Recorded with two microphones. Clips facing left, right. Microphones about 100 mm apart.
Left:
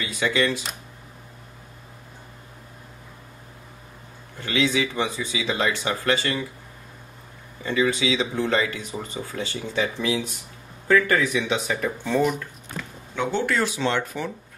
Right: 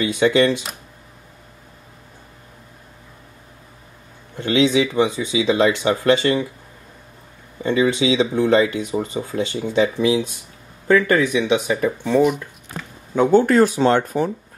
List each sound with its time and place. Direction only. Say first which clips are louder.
0.0 s speech: right 8 dB; 25° right (ahead or behind)
4.4 s speech: right 7 dB; 20° right (ahead or behind)
7.6 s speech: right 5 dB; 25° right (ahead or behind); by 12.4 s 5° right (ahead or behind)
13.1 s speech: right 10 dB; 40° right (ahead or behind)